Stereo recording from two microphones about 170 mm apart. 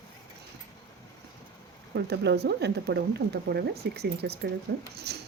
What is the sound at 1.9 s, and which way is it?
Speech, 80° right.